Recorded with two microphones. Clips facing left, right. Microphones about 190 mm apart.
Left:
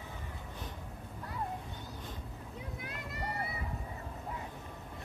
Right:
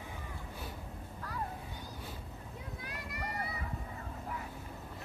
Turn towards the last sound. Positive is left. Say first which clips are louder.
# left 1 dB
turn(degrees=25)  # may be behind; listen again after turning